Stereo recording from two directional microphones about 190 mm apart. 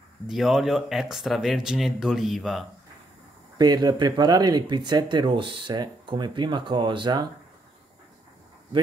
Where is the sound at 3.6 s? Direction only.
20° right (ahead or behind).